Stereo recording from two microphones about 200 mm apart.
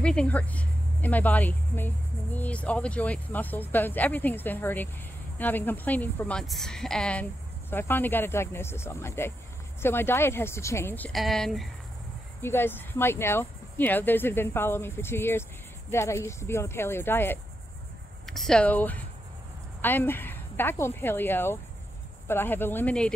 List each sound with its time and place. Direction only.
0.0 s speech: 5° left (ahead or behind)